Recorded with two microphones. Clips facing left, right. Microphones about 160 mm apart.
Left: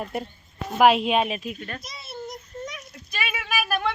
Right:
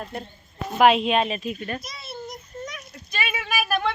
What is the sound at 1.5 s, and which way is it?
Speech, 10° right (ahead or behind).